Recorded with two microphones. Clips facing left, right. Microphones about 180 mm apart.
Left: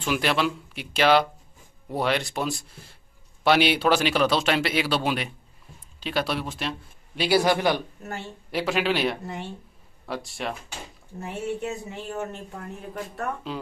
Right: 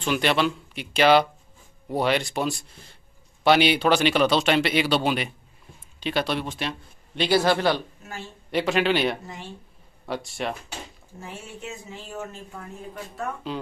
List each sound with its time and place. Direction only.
0.0 s speech: 5° left (ahead or behind)
8.0 s speech: 60° left (ahead or behind)
8.5 s speech: 5° left (ahead or behind)
11.1 s speech: 60° left (ahead or behind)
13.5 s speech: centre (ahead or behind)